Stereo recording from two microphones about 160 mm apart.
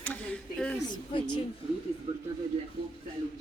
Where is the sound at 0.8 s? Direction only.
30° left (ahead or behind).